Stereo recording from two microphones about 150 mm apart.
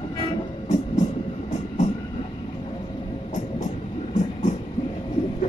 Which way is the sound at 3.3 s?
55° left (ahead or behind).